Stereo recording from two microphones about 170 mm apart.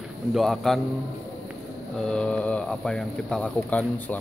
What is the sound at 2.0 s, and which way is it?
Speech, 5° left (ahead or behind).